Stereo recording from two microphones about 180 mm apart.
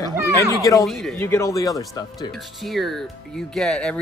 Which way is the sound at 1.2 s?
15° left (ahead or behind).